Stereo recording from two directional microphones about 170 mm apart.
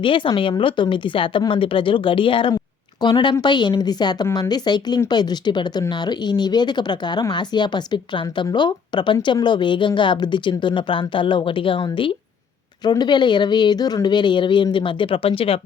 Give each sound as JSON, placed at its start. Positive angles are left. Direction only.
{"t": 0.0, "sound": "a woman's voice", "side_deg": 30}